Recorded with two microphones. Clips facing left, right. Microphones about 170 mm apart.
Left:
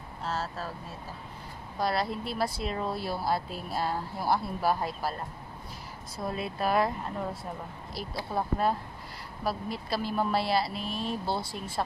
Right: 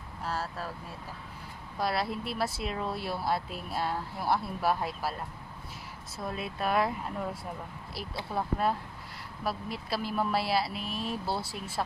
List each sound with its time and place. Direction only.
0.2 s vehicle: 25° left (ahead or behind)
1.8 s speech: 5° right (ahead or behind)
6.1 s speech: centre (ahead or behind)
8.4 s speech: centre (ahead or behind)